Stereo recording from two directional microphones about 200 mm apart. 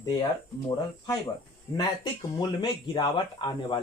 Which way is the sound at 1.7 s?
20° left (ahead or behind).